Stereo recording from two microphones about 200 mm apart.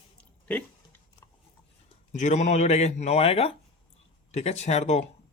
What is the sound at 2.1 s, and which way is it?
Speech, 35° left (ahead or behind).